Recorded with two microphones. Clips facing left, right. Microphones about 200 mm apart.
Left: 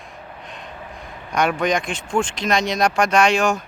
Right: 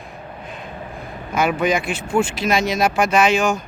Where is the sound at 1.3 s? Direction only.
5° right (ahead or behind).